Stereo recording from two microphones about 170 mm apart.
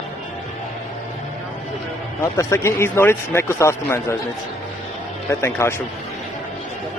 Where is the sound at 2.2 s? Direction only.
15° left (ahead or behind).